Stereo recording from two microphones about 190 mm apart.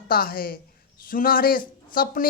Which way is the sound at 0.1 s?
50° left (ahead or behind).